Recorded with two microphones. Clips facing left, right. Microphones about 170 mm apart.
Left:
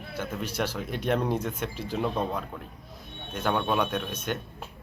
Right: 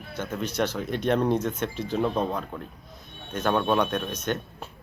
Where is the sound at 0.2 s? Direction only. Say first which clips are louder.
Right 3 dB; 10° left (ahead or behind).